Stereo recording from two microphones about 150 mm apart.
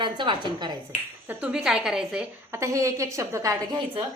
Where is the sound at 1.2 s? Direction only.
5° right (ahead or behind); by 3.8 s 25° right (ahead or behind).